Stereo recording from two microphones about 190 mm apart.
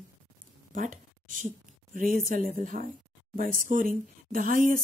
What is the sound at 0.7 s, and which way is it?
Speech, 45° right (ahead or behind).